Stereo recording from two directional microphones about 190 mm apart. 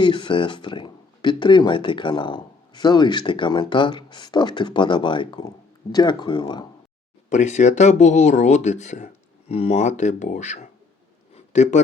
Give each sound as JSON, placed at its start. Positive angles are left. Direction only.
{"t": 0.0, "sound": "speech", "side_deg": 25}
{"t": 7.3, "sound": "speech", "side_deg": 40}
{"t": 11.3, "sound": "a sound", "side_deg": 35}